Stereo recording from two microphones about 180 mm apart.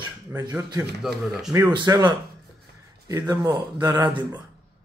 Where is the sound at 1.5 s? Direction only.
20° right (ahead or behind).